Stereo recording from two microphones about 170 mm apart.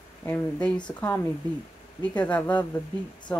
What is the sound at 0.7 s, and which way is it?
Speech, 25° left (ahead or behind).